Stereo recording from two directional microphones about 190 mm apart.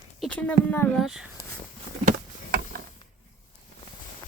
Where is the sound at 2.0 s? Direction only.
50° right (ahead or behind).